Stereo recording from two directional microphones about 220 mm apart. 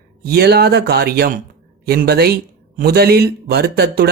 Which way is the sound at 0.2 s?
45° right (ahead or behind).